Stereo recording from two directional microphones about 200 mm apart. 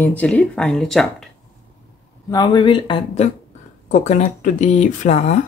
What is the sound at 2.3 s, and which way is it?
Speech, 20° left (ahead or behind).